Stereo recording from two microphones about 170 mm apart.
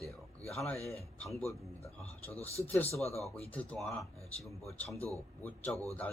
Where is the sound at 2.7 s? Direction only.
15° left (ahead or behind).